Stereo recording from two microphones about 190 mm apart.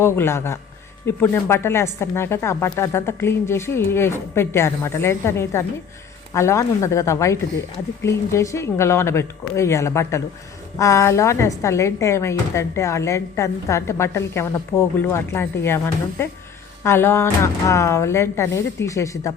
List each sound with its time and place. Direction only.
0.0 s speech: 15° left (ahead or behind)